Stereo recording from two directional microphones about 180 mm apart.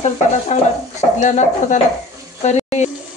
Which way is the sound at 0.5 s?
40° left (ahead or behind).